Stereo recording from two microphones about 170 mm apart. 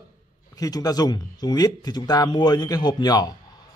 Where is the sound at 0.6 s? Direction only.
20° left (ahead or behind).